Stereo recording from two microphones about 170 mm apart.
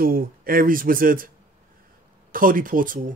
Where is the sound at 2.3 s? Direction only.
55° right (ahead or behind).